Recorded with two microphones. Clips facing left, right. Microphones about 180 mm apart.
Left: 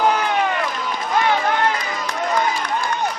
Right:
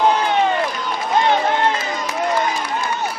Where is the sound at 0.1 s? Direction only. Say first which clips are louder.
Right 3 dB; 30° right (ahead or behind).